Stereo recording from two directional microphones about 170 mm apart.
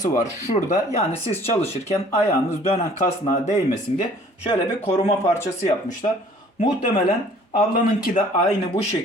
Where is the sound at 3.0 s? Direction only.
50° left (ahead or behind).